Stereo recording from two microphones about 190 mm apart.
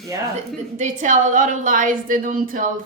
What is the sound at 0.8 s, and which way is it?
A woman's voice, 40° right (ahead or behind).